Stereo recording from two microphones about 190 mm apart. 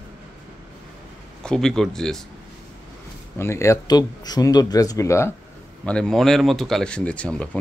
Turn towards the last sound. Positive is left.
turn(degrees=5)  # may be behind; listen again after turning